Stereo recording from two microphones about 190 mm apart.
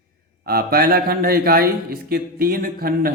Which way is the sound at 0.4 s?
55° right (ahead or behind).